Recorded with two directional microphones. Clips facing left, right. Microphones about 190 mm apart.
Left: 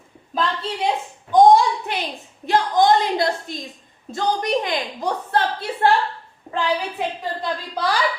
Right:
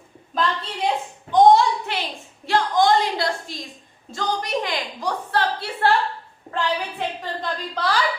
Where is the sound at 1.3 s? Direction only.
10° left (ahead or behind).